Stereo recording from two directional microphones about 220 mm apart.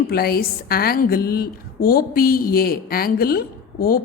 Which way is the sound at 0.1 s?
45° left (ahead or behind).